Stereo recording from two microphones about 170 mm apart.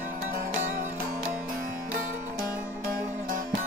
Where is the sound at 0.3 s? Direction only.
55° right (ahead or behind).